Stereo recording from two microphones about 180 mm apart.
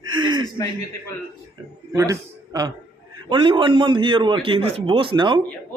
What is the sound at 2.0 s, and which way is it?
A man's voice, 20° right (ahead or behind).